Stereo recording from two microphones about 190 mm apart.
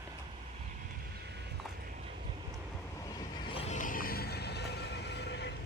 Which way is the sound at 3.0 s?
30° left (ahead or behind).